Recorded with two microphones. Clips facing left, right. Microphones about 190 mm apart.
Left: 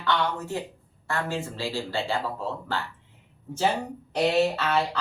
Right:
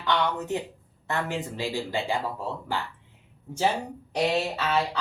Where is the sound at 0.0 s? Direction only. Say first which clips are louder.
Even; 20° right (ahead or behind).